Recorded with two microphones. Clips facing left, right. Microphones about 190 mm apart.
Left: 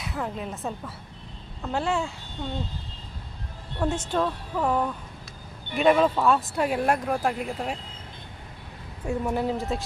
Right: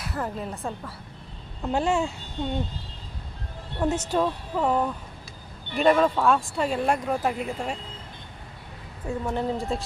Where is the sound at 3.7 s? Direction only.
5° right (ahead or behind).